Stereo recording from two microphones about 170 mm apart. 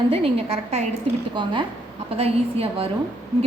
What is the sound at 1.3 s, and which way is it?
A woman's voice, 30° right (ahead or behind).